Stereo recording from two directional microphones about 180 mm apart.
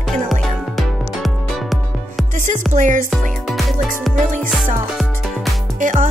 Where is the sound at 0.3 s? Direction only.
Centre (ahead or behind).